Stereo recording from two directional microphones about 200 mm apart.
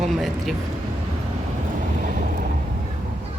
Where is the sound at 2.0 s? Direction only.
45° right (ahead or behind).